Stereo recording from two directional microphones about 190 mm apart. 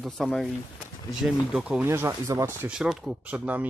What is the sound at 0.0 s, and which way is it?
Speech, centre (ahead or behind).